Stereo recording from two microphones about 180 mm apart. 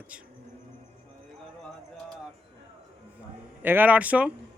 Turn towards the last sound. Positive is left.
turn(degrees=-5)  # may be behind; listen again after turning